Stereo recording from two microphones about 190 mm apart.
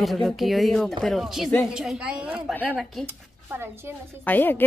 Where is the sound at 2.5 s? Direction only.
10° left (ahead or behind).